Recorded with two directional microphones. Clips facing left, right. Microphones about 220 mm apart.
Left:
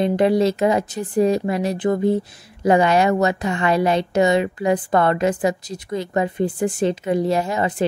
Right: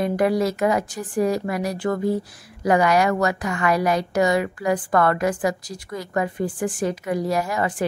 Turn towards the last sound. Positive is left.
turn(degrees=20)  # may be behind; listen again after turning